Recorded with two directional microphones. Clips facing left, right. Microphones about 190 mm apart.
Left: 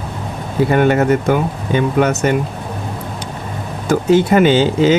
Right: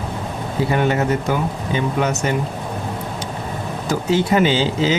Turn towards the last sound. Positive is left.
turn(degrees=55)  # may be behind; listen again after turning